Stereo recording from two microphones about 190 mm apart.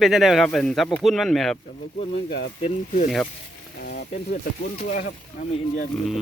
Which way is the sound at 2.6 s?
35° left (ahead or behind).